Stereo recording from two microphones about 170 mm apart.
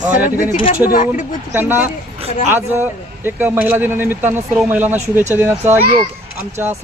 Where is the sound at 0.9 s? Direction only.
50° left (ahead or behind).